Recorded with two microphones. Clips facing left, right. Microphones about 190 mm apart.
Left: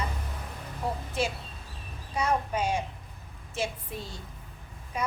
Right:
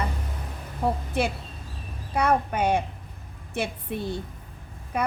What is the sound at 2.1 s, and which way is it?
A woman's voice, 60° right (ahead or behind).